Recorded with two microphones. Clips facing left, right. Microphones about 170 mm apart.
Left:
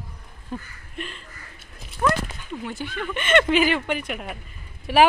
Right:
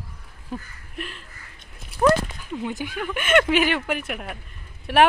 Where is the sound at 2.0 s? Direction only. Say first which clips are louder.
Right 5 dB; 35° right (ahead or behind).